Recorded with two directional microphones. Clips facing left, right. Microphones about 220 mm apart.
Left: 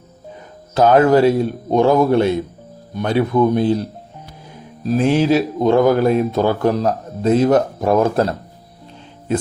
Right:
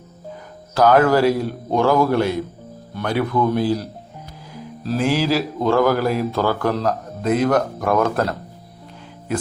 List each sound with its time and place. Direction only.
0.7 s speech: 20° left (ahead or behind)